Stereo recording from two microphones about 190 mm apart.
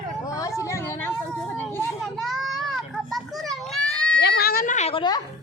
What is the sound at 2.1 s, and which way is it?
Children playing, centre (ahead or behind).